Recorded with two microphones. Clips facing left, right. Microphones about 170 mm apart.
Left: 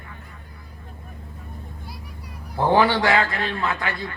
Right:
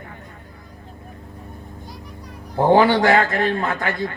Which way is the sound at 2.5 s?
45° right (ahead or behind).